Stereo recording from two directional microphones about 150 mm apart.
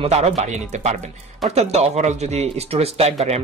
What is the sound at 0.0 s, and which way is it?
Speech, 45° right (ahead or behind).